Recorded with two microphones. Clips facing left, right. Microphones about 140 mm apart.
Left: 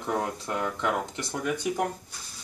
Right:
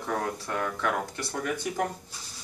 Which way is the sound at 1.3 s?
5° left (ahead or behind).